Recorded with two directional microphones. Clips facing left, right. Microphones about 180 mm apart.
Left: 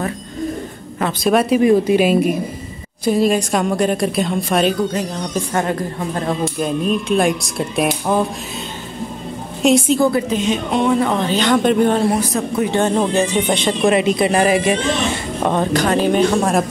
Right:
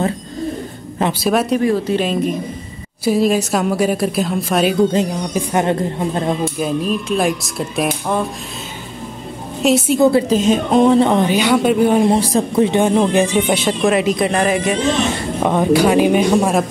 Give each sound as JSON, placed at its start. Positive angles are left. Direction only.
{"t": 1.2, "sound": "speech", "side_deg": 0}
{"t": 1.6, "sound": "speech", "side_deg": 15}
{"t": 3.1, "sound": "speech", "side_deg": -5}
{"t": 5.0, "sound": "a woman's voice", "side_deg": -25}
{"t": 6.4, "sound": "speech", "side_deg": -5}
{"t": 9.6, "sound": "a woman's voice", "side_deg": -5}
{"t": 9.9, "sound": "a woman's voice", "side_deg": -25}
{"t": 10.3, "sound": "music", "side_deg": -40}
{"t": 11.0, "sound": "a woman's voice", "side_deg": -25}
{"t": 11.2, "sound": "speech", "side_deg": -10}
{"t": 12.1, "sound": "music", "side_deg": -30}
{"t": 12.7, "sound": "speech", "side_deg": -10}
{"t": 15.4, "sound": "speech", "side_deg": -10}